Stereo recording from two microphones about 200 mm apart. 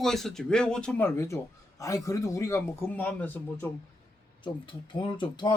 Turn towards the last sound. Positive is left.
turn(degrees=20)  # may be behind; listen again after turning